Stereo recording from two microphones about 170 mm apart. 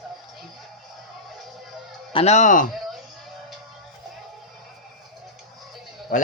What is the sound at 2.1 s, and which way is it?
Speech, 40° left (ahead or behind).